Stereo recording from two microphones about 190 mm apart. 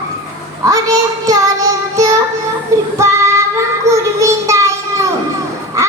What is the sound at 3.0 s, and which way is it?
Female singing, 15° right (ahead or behind).